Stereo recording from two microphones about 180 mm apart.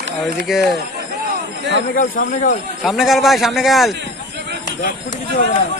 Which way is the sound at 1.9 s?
50° left (ahead or behind).